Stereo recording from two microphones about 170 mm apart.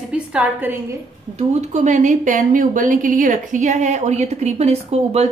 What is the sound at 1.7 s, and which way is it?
A woman's voice, 45° right (ahead or behind).